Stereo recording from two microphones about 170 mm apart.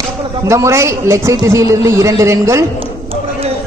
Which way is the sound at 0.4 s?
15° right (ahead or behind).